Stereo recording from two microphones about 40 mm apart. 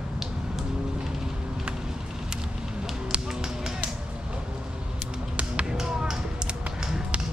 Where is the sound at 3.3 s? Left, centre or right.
Centre.